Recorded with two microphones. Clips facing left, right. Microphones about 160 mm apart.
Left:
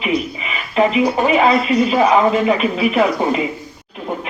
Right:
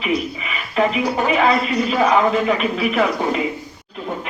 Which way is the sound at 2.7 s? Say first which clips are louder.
Left 3 dB; 30° left (ahead or behind).